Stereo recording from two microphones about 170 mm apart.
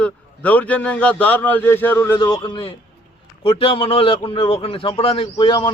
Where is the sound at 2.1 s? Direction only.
25° left (ahead or behind).